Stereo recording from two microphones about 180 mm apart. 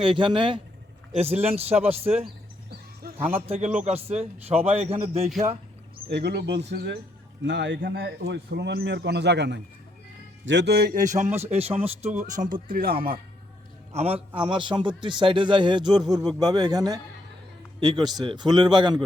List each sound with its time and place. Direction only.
0.0 s a man's voice: 30° right (ahead or behind)
3.2 s a man's voice: 10° right (ahead or behind)
3.4 s a man's voice: 35° right (ahead or behind)
6.1 s speech: 65° right (ahead or behind)
7.4 s a man's voice: 80° right
7.8 s speech: 60° right (ahead or behind)
11.0 s a man's voice: 40° right (ahead or behind)
12.2 s speech: 50° right (ahead or behind)
13.9 s a man's voice: 35° right (ahead or behind)